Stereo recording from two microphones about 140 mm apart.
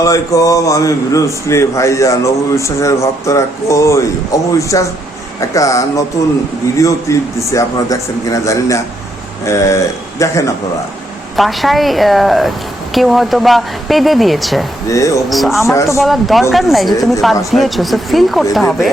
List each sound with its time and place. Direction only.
0.0 s speech: 25° left (ahead or behind)
11.3 s speech: centre (ahead or behind)
14.8 s speech: 20° left (ahead or behind)
15.3 s speech: centre (ahead or behind)
15.6 s speech: 20° left (ahead or behind)
16.0 s speech: centre (ahead or behind)